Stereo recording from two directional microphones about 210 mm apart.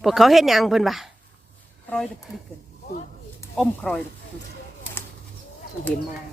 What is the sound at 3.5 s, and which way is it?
Speech, 5° left (ahead or behind).